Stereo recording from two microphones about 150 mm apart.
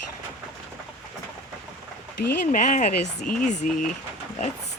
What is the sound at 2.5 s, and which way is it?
Speech, 60° left (ahead or behind).